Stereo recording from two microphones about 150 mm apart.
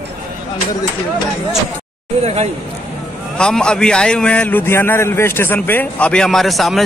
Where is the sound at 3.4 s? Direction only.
5° left (ahead or behind).